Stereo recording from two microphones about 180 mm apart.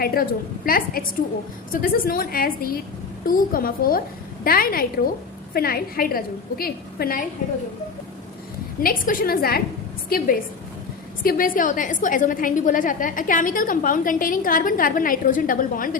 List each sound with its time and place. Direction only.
0.0 s a woman's voice: 55° left (ahead or behind)
8.8 s a woman's voice: 50° left (ahead or behind)